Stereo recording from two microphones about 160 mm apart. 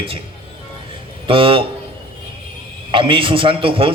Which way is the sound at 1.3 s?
35° right (ahead or behind).